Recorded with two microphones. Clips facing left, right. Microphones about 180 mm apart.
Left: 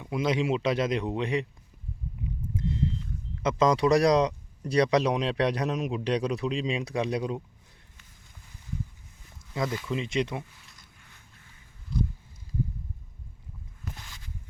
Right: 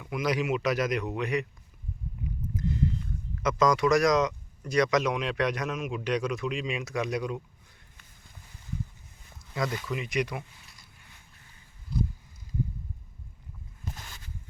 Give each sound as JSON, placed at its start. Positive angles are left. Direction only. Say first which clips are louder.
{"t": 0.0, "sound": "a man's voice", "louder": "left 2 dB", "side_deg": 25}
{"t": 3.4, "sound": "speech", "louder": "left 1 dB", "side_deg": 30}
{"t": 9.6, "sound": "a man's voice", "louder": "left 2 dB", "side_deg": 25}